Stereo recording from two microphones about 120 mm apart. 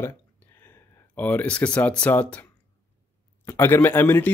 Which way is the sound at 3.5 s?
20° left (ahead or behind).